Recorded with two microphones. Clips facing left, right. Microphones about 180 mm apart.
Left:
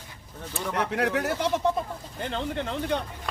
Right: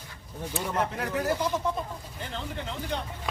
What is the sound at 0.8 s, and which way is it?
Speech, 70° left (ahead or behind).